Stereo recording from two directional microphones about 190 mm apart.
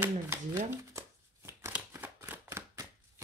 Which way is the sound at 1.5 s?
10° right (ahead or behind).